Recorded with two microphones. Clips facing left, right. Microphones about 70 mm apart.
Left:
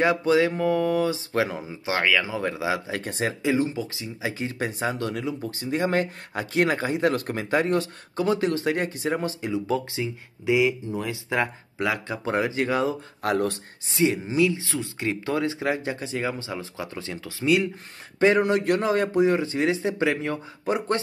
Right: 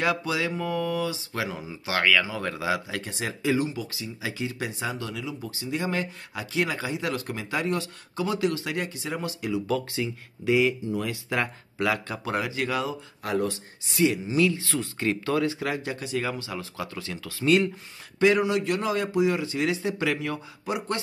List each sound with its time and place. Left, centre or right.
0.0 s speech: left
2.9 s speech: left
3.4 s speech: left
13.2 s speech: left
13.8 s speech: left
18.4 s speech: left